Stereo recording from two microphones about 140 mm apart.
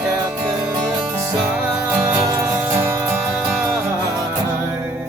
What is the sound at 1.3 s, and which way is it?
Music, 10° right (ahead or behind).